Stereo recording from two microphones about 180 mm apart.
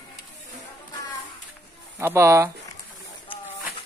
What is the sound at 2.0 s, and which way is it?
Speech, 15° right (ahead or behind).